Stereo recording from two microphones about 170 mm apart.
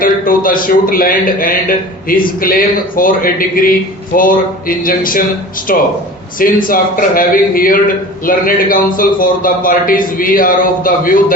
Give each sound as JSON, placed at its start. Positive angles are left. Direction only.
{"t": 0.0, "sound": "a man's voice", "side_deg": 55}